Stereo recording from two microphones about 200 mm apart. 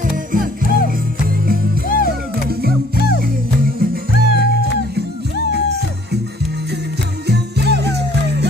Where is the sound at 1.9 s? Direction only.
45° left (ahead or behind).